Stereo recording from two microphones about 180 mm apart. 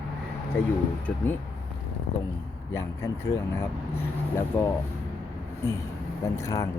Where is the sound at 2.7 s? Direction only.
15° left (ahead or behind).